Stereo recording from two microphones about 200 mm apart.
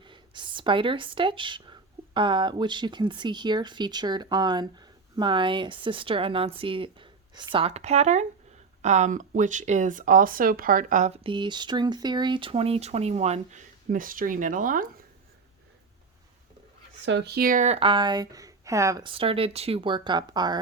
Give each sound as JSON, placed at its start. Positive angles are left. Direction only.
{"t": 0.0, "sound": "speech", "side_deg": -25}
{"t": 17.1, "sound": "speech", "side_deg": -60}